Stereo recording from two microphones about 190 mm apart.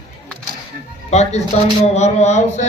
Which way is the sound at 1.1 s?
35° left (ahead or behind).